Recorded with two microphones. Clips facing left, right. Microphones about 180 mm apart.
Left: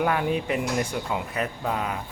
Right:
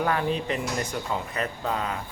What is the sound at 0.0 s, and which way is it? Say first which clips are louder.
Speech: left 1 dB; 10° left (ahead or behind).